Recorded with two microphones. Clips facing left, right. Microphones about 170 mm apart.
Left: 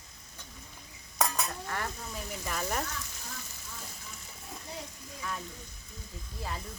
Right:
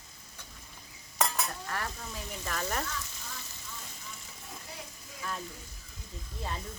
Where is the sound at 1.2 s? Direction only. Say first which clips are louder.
Even; 15° left (ahead or behind).